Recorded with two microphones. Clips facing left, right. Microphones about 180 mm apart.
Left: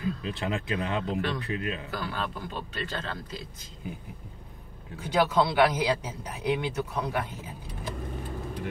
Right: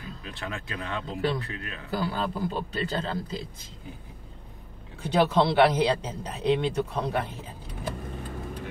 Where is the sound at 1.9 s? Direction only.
35° right (ahead or behind).